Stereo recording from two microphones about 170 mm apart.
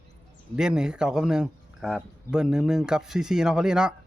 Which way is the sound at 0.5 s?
5° right (ahead or behind).